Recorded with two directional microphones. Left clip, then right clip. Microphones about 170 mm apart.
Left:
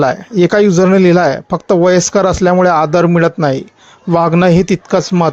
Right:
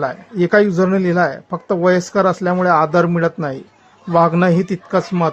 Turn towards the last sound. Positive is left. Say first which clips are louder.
# left 5 dB
turn(degrees=30)  # may be behind; listen again after turning